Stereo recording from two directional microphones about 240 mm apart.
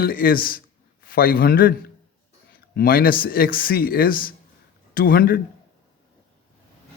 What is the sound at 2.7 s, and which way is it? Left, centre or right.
Speech, left.